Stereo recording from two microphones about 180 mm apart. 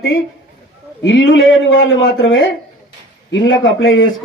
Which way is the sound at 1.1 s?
90° left.